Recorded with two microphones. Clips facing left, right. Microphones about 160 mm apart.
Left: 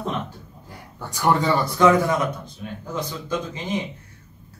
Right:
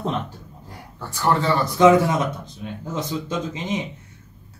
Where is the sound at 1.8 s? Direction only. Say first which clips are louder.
Right 3 dB; 25° right (ahead or behind).